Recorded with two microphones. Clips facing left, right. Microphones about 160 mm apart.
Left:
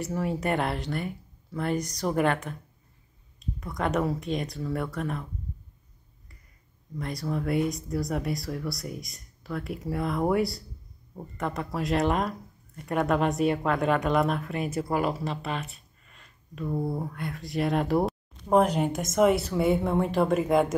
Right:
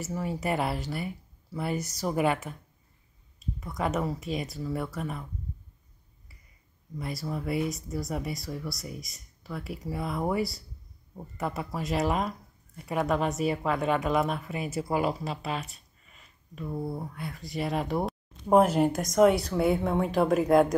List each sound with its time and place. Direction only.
0.0 s speech: centre (ahead or behind)
7.0 s speech: 5° right (ahead or behind)
16.1 s a sound: 5° right (ahead or behind)
17.0 s speech: centre (ahead or behind)